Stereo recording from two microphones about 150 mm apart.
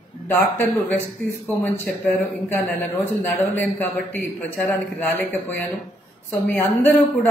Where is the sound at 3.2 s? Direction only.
15° left (ahead or behind).